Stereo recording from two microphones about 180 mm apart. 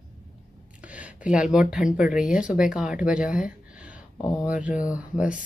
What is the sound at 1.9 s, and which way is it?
Speech, 5° right (ahead or behind).